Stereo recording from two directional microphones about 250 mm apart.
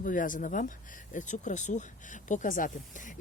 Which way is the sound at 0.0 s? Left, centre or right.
Left.